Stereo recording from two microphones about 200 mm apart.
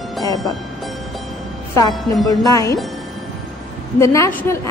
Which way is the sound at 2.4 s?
15° left (ahead or behind).